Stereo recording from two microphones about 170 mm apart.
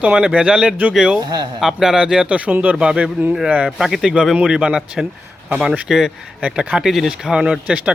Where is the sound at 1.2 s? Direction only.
25° right (ahead or behind).